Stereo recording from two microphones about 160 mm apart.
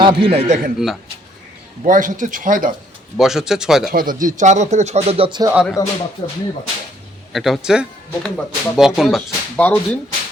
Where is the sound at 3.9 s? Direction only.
60° right (ahead or behind); by 5.5 s 30° right (ahead or behind).